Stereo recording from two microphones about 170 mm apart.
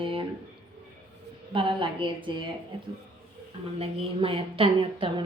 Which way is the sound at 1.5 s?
30° right (ahead or behind).